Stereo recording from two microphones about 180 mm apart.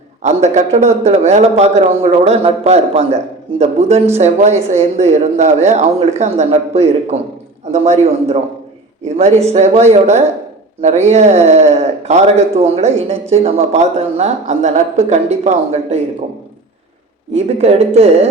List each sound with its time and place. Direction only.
0.2 s a man's voice: 40° right (ahead or behind)
17.3 s a man's voice: 35° right (ahead or behind)